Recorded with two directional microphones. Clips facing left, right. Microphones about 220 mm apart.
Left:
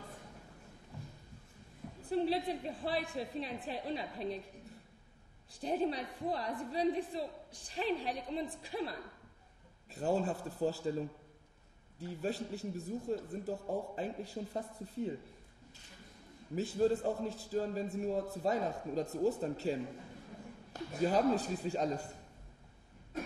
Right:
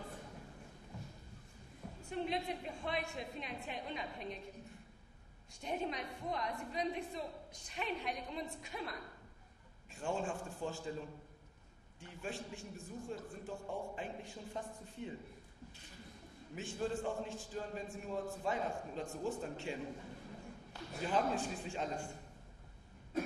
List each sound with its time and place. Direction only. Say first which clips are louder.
2.0 s a man's voice: left 6 dB; 35° left (ahead or behind)
5.5 s a man's voice: left 6 dB; 35° left (ahead or behind)
12.0 s a man's voice: left 7 dB; 35° left (ahead or behind)
16.5 s a man's voice: left 8 dB; 35° left (ahead or behind)